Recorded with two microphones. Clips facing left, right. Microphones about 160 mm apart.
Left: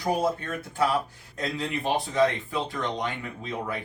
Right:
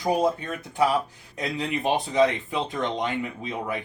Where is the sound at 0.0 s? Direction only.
15° right (ahead or behind).